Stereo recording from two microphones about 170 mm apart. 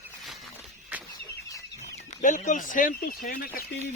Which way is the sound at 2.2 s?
50° left (ahead or behind).